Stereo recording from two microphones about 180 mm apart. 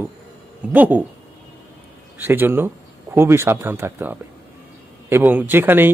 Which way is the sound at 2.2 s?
10° right (ahead or behind).